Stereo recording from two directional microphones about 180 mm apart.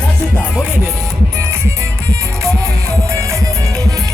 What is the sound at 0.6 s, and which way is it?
Music, 10° right (ahead or behind).